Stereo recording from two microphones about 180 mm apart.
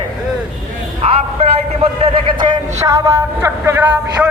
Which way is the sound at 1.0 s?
30° right (ahead or behind).